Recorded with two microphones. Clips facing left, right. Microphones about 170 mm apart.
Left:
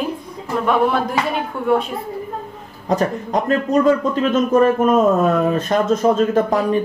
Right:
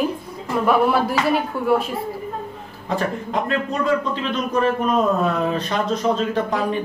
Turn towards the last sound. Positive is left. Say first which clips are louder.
# left 5 dB
turn(degrees=45)  # may be behind; listen again after turning